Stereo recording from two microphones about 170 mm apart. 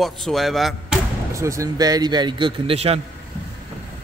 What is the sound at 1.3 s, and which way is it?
A man's voice, 15° right (ahead or behind).